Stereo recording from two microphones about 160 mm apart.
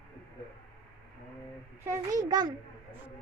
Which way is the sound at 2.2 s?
25° right (ahead or behind).